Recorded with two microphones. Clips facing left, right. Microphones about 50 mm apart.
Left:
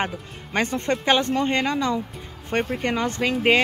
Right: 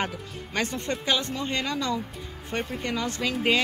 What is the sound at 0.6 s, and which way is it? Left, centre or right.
Speech, left.